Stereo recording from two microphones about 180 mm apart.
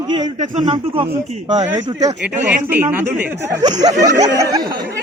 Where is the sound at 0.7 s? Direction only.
30° right (ahead or behind).